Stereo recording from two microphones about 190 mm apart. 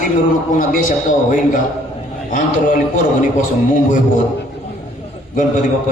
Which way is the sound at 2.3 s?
40° left (ahead or behind).